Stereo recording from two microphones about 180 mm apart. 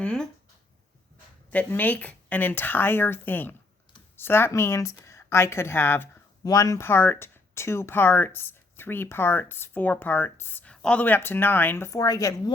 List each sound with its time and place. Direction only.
0.0 s speech: 5° left (ahead or behind)
1.5 s a woman's voice: 10° left (ahead or behind)